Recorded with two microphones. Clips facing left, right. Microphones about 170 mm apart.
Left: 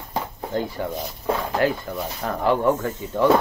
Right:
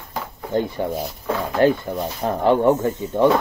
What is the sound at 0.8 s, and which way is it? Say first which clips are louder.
Speech: right 4 dB; 30° right (ahead or behind).